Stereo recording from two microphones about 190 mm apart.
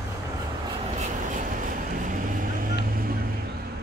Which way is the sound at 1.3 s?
45° right (ahead or behind).